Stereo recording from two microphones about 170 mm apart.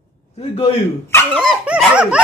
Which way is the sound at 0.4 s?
35° left (ahead or behind).